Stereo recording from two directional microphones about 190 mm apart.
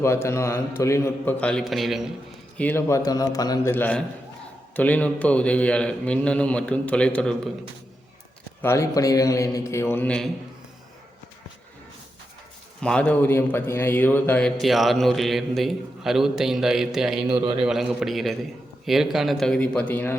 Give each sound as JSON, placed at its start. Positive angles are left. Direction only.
{"t": 0.0, "sound": "a man's voice", "side_deg": 15}
{"t": 2.6, "sound": "a man's voice", "side_deg": 10}
{"t": 8.6, "sound": "a man's voice", "side_deg": 15}
{"t": 12.8, "sound": "a man's voice", "side_deg": 5}
{"t": 17.2, "sound": "a man's voice", "side_deg": -25}
{"t": 17.6, "sound": "a man's voice", "side_deg": -5}